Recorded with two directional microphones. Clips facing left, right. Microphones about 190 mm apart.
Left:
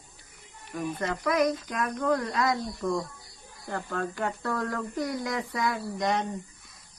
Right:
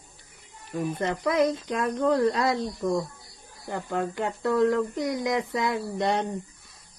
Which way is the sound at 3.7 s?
20° right (ahead or behind).